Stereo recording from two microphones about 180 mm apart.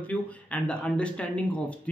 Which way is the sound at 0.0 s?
10° left (ahead or behind).